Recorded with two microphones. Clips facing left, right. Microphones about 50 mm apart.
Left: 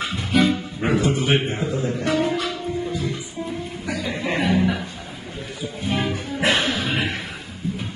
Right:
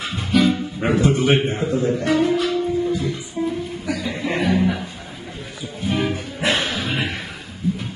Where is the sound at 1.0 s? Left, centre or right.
Right.